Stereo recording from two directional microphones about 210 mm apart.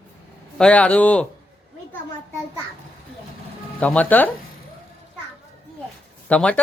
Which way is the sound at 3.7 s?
5° left (ahead or behind).